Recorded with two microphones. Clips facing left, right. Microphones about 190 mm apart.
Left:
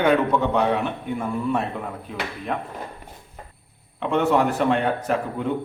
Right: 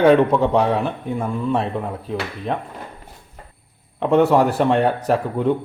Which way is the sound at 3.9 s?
35° right (ahead or behind).